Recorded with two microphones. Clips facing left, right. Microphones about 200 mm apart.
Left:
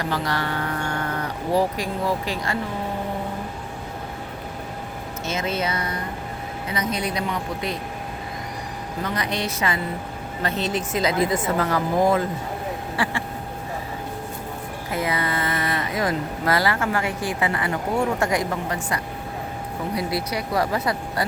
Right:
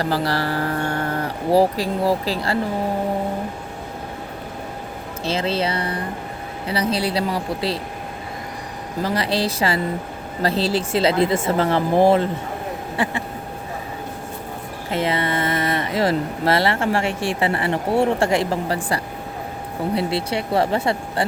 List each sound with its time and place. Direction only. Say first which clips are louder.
0.0 s speech: right 4 dB; 35° right (ahead or behind)
5.2 s speech: right 4 dB; 30° right (ahead or behind)
9.0 s speech: right 6 dB; 30° right (ahead or behind)
14.8 s speech: right 4 dB; 25° right (ahead or behind)